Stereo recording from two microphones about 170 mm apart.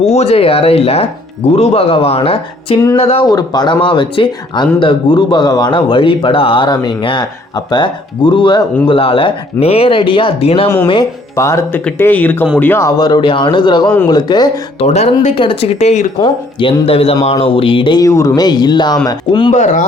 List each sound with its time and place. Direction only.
0.0 s speech: 40° left (ahead or behind)
3.2 s speech: 25° left (ahead or behind)
11.3 s speech: 15° left (ahead or behind)
13.0 s speech: 25° left (ahead or behind)
14.8 s speech: 40° left (ahead or behind)
16.1 s speech: 25° left (ahead or behind)
19.5 s speech: 45° left (ahead or behind)